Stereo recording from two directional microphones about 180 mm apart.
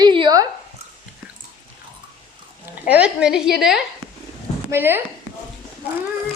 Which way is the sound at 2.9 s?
5° right (ahead or behind).